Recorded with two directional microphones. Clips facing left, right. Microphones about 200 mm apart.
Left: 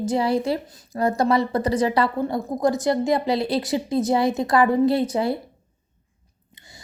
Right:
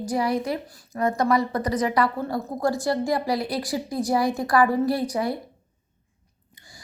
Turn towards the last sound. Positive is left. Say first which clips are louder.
# left 2 dB
turn(degrees=25)  # may be behind; listen again after turning